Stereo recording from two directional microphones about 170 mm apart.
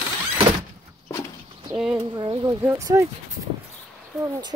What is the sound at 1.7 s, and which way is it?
Speech, 5° right (ahead or behind).